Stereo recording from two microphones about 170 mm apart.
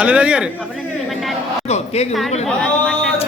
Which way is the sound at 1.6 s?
40° left (ahead or behind).